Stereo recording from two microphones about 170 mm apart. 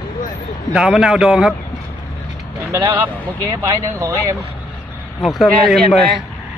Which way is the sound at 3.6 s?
20° right (ahead or behind).